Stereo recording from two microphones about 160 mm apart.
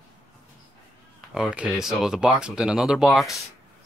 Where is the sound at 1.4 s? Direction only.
5° right (ahead or behind).